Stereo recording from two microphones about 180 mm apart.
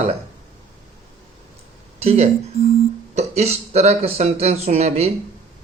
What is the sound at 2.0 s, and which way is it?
Speech, 35° right (ahead or behind).